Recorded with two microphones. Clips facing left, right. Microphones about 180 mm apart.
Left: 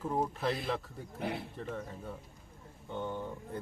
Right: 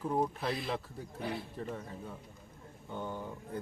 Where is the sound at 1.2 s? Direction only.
65° left (ahead or behind).